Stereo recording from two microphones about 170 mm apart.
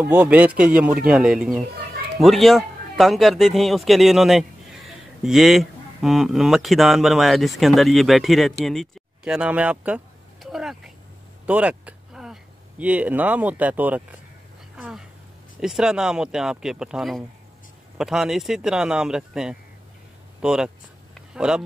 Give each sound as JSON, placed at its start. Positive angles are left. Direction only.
{"t": 0.0, "sound": "speech", "side_deg": -10}
{"t": 14.8, "sound": "a sound", "side_deg": 0}
{"t": 15.6, "sound": "speech", "side_deg": -5}